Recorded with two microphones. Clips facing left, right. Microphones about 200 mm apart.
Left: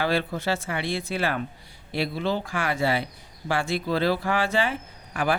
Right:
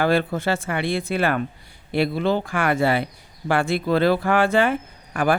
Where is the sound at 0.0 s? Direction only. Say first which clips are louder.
Right 5 dB; 50° right (ahead or behind).